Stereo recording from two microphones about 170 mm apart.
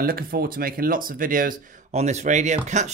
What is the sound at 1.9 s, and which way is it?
Speech, 40° right (ahead or behind).